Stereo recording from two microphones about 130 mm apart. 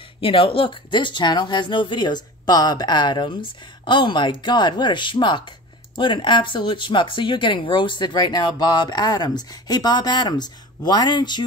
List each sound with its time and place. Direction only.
0.2 s speech: 45° left (ahead or behind)